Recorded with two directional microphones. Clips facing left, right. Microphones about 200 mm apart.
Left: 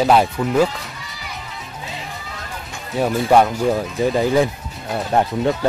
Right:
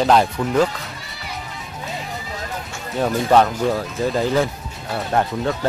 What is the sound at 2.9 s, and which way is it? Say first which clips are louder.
Speech: left 1 dB; 5° left (ahead or behind).